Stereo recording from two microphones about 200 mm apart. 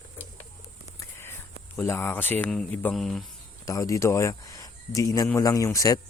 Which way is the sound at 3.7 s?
15° left (ahead or behind).